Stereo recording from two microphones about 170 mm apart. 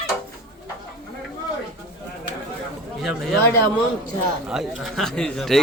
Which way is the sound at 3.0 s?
Centre (ahead or behind).